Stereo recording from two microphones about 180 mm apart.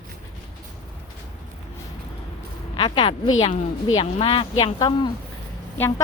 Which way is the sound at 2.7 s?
30° left (ahead or behind).